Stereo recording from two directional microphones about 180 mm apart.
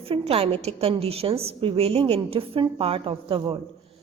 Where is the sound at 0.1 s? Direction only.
30° right (ahead or behind).